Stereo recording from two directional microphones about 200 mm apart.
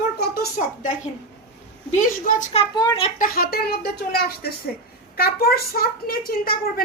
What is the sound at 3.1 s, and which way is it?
Speech, 45° left (ahead or behind).